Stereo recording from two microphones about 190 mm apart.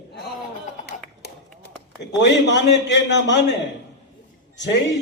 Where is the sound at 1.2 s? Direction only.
60° left (ahead or behind).